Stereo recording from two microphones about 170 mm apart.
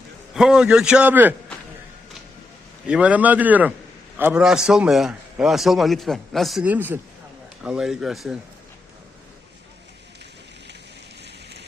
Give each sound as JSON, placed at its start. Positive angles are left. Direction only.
{"t": 0.3, "sound": "a man's voice", "side_deg": -5}
{"t": 2.8, "sound": "a man's voice", "side_deg": -5}
{"t": 11.2, "sound": "a sound", "side_deg": -80}